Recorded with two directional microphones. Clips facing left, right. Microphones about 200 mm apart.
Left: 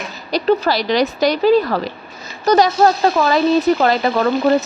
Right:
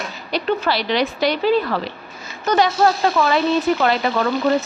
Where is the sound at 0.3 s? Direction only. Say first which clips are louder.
Left 5 dB; 40° left (ahead or behind).